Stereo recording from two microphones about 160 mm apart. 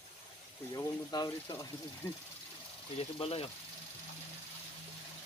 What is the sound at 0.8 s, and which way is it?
Speech, 25° left (ahead or behind).